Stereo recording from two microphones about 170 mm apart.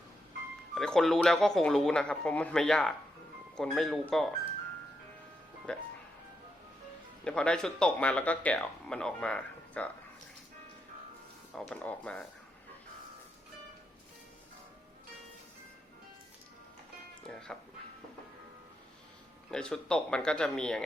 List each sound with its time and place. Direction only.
0.8 s speech: centre (ahead or behind)
5.7 s speech: 5° left (ahead or behind)
7.3 s speech: 5° left (ahead or behind)
11.5 s speech: 5° left (ahead or behind)
17.2 s music: 5° left (ahead or behind)
19.5 s speech: 5° left (ahead or behind)